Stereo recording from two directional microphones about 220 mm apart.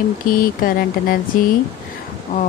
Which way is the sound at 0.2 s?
40° left (ahead or behind).